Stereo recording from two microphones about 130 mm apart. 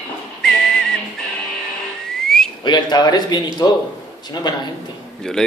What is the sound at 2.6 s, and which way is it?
Speech, 35° left (ahead or behind).